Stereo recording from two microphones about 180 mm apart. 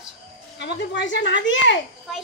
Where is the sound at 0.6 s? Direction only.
75° left (ahead or behind).